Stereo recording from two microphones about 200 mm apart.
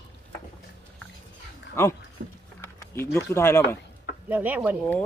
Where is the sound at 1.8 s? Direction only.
15° left (ahead or behind).